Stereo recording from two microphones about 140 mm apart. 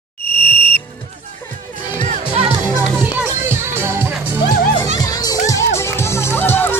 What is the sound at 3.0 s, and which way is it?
Music, 15° right (ahead or behind).